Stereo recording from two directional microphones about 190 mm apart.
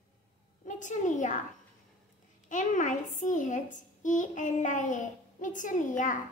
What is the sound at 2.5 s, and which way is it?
A child's voice, 40° left (ahead or behind).